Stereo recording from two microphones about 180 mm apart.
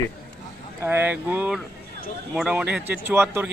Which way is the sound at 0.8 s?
10° right (ahead or behind).